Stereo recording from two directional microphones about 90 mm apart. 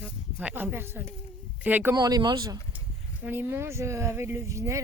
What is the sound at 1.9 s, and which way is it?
Speech, 45° right (ahead or behind).